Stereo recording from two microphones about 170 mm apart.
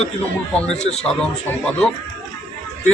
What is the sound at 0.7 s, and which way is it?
Speech, 40° left (ahead or behind).